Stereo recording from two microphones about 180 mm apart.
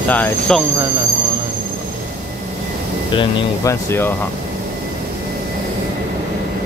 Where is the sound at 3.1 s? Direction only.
15° left (ahead or behind).